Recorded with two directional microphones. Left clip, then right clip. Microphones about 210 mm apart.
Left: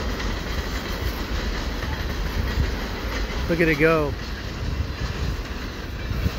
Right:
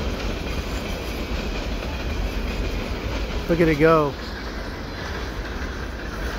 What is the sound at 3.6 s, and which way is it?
Speech, 5° right (ahead or behind).